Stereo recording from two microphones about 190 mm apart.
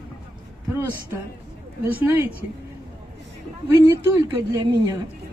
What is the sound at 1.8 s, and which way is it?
Speech, 10° right (ahead or behind).